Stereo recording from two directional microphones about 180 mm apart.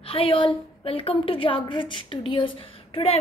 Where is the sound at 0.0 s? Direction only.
30° left (ahead or behind).